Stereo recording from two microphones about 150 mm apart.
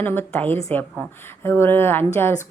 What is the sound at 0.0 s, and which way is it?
A woman's voice, 15° left (ahead or behind).